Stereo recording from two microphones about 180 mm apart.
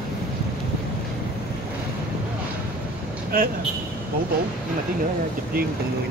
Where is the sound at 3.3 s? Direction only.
55° right (ahead or behind).